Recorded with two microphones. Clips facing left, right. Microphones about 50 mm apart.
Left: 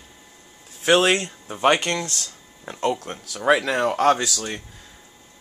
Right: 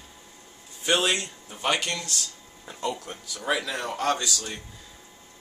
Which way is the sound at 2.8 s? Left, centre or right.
Left.